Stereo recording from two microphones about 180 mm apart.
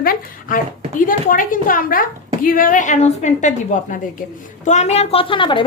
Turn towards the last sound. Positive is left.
turn(degrees=30)  # may be behind; listen again after turning